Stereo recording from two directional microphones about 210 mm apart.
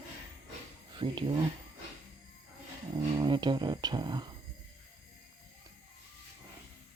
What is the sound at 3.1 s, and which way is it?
Speech, 20° right (ahead or behind).